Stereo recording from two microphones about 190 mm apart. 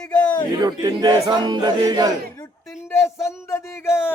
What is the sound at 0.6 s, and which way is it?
Speech, 20° right (ahead or behind).